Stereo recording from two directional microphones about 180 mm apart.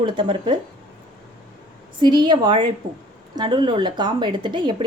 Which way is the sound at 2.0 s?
25° right (ahead or behind).